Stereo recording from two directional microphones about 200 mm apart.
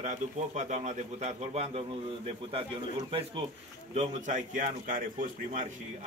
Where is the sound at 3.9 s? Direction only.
40° right (ahead or behind).